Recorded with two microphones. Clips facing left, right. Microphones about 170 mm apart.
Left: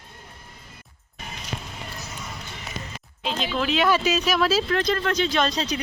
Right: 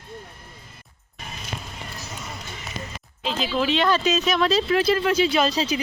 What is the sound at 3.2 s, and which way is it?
Speech, 5° right (ahead or behind).